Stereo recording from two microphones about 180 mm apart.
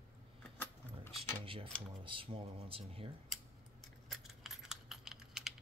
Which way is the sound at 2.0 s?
30° right (ahead or behind).